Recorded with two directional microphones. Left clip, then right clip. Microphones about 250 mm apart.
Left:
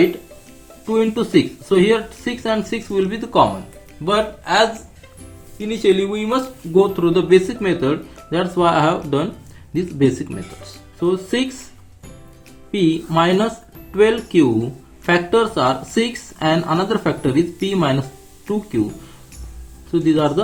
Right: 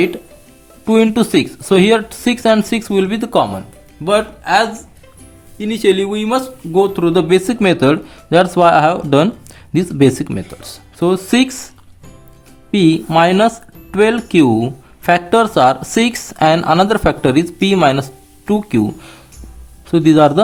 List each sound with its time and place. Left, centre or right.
0.9 s speech: right
4.0 s speech: right
5.5 s speech: right
12.7 s speech: right
19.9 s speech: right